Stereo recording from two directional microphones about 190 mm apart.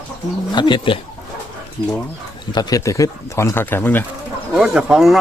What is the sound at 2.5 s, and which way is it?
Speech, 20° left (ahead or behind).